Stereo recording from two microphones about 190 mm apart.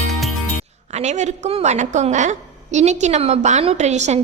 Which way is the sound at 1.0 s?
35° right (ahead or behind).